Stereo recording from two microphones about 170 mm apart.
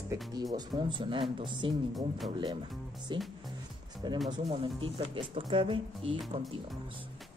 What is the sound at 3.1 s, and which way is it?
Speech, 30° right (ahead or behind).